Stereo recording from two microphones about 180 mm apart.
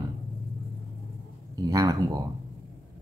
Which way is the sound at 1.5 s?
20° right (ahead or behind).